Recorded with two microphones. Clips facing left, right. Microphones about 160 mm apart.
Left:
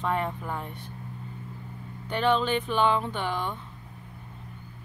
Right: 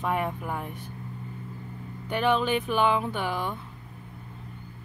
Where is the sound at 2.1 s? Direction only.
10° right (ahead or behind).